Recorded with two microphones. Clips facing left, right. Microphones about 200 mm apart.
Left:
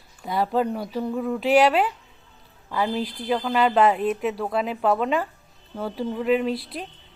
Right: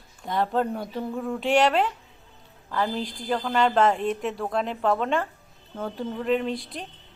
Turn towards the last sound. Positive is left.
turn(degrees=5)  # may be behind; listen again after turning